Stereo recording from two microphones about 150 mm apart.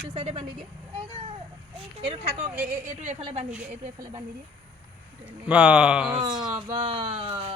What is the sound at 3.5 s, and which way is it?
Speech, 10° right (ahead or behind).